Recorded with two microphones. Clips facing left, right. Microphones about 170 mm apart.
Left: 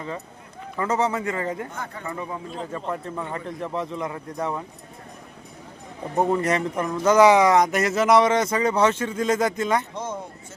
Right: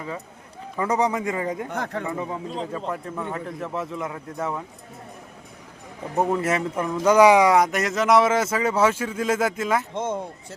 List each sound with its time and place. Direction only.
0.8 s a man's voice: 15° right (ahead or behind)
1.7 s speech: 75° right (ahead or behind)
2.0 s a man's voice: 15° right (ahead or behind)
2.7 s speech: 5° right (ahead or behind)
6.1 s speech: 5° right (ahead or behind)
9.9 s speech: 25° right (ahead or behind)